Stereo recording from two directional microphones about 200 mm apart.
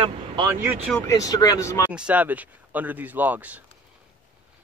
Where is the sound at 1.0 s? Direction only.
15° left (ahead or behind).